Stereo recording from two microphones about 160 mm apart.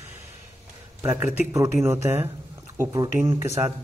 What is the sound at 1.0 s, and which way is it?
Speech, 10° right (ahead or behind).